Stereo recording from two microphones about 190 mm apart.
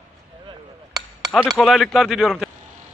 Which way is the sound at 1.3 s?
Centre (ahead or behind).